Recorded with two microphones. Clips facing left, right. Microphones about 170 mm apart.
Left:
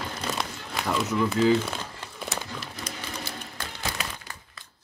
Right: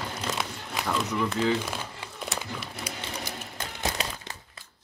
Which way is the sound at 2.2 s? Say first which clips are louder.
Even; centre (ahead or behind).